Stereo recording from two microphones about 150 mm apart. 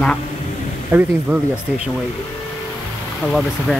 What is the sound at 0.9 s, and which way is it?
Speech, 15° right (ahead or behind).